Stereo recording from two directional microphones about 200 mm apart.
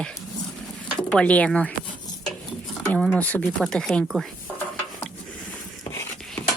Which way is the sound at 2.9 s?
5° left (ahead or behind).